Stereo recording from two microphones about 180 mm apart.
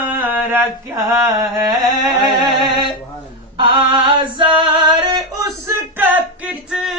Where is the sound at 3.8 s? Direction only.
30° right (ahead or behind).